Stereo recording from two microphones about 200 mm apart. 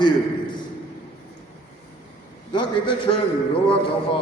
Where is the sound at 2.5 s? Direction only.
25° left (ahead or behind).